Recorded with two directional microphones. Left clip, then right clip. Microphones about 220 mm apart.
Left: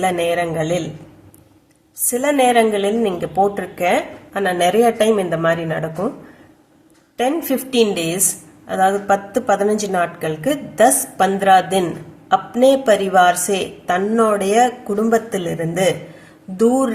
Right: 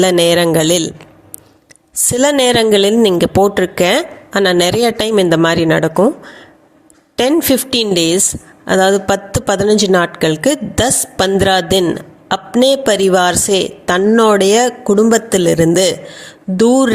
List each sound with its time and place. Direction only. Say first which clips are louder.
0.0 s a man's voice: right 7 dB; 45° right (ahead or behind)
2.0 s speech: right 4 dB; 40° right (ahead or behind)
7.2 s speech: right 7 dB; 40° right (ahead or behind)